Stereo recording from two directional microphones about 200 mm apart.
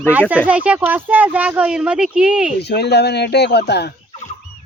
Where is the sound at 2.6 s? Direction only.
55° left (ahead or behind).